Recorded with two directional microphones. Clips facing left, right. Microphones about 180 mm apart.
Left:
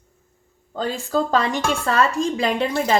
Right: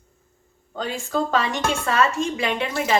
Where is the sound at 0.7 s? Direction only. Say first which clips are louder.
Left 3 dB; 35° left (ahead or behind).